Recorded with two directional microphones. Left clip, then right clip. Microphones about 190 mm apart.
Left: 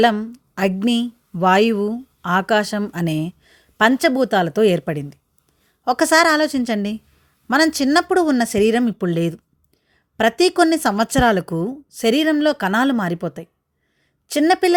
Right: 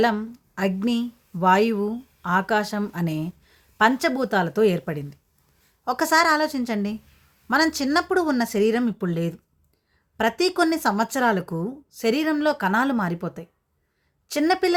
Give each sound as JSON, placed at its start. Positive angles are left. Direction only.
{"t": 0.0, "sound": "speech", "side_deg": 35}